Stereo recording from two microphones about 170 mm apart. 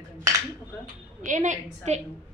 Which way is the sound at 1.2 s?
45° right (ahead or behind).